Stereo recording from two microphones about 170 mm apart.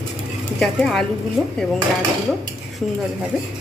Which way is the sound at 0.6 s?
Centre (ahead or behind).